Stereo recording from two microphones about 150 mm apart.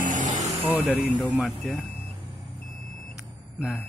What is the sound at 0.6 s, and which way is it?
Speech, 10° right (ahead or behind).